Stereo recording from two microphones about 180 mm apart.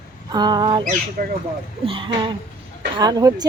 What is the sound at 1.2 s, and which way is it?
Speech, 55° right (ahead or behind).